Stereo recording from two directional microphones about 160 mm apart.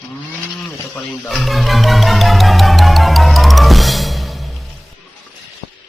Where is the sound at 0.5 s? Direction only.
10° left (ahead or behind).